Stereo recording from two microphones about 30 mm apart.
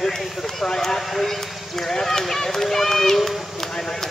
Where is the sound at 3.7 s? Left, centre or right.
Centre.